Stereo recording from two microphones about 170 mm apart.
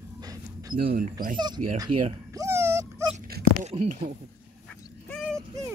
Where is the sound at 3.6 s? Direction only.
40° right (ahead or behind).